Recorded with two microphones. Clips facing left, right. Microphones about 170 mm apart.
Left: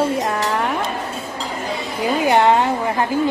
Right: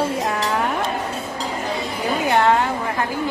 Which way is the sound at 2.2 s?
20° left (ahead or behind).